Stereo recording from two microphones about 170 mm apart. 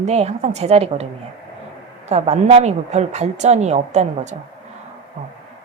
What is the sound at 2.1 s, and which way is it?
A woman's voice, 40° right (ahead or behind).